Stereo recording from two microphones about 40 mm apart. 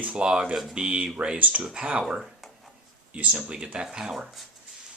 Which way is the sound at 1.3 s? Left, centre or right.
Right.